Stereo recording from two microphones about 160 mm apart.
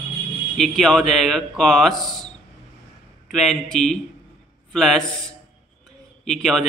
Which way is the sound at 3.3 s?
Centre (ahead or behind).